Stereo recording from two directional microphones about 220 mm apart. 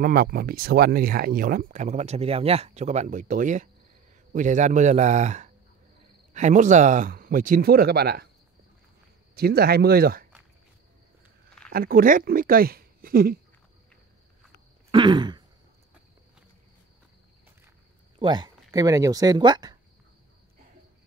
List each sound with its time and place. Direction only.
0.0 s speech: 40° right (ahead or behind)
9.3 s speech: 45° right (ahead or behind)
11.7 s speech: 40° right (ahead or behind)
14.9 s throat clearing: 20° right (ahead or behind)
18.2 s speech: 20° right (ahead or behind)